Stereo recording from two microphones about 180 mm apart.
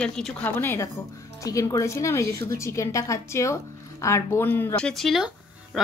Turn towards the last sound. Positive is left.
turn(degrees=0)  # may be behind; listen again after turning